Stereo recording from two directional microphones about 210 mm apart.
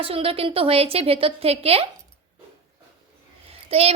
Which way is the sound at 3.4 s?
30° right (ahead or behind).